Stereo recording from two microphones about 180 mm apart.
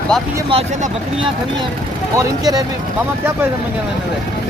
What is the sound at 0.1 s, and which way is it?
Speech, 5° left (ahead or behind).